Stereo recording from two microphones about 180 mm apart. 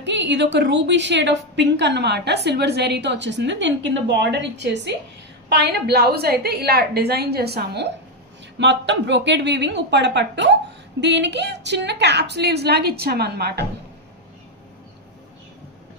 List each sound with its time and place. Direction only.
0.0 s a woman's voice: 80° right; by 7.9 s 65° right (ahead or behind)
8.5 s a woman's voice: 80° right; by 13.7 s 65° right (ahead or behind)